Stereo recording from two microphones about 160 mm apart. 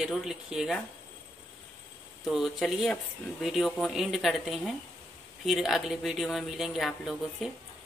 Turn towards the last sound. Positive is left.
turn(degrees=0)  # may be behind; listen again after turning